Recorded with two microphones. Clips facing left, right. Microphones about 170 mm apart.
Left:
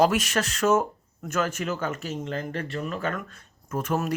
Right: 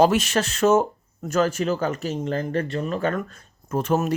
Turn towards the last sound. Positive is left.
turn(degrees=-25)  # may be behind; listen again after turning